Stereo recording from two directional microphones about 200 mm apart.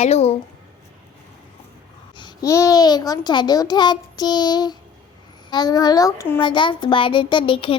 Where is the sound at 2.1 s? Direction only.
20° left (ahead or behind).